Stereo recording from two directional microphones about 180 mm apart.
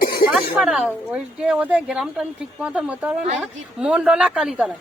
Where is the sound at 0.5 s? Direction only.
5° right (ahead or behind).